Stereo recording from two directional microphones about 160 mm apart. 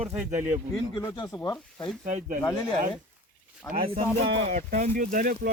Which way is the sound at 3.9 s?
40° right (ahead or behind).